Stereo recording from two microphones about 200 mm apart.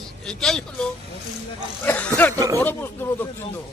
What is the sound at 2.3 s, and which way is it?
Speech, 15° right (ahead or behind).